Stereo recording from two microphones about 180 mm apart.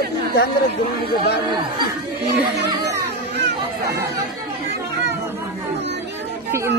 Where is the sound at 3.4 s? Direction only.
70° right (ahead or behind).